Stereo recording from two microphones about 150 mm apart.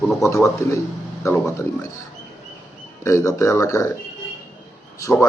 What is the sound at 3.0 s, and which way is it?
Speech, 20° left (ahead or behind).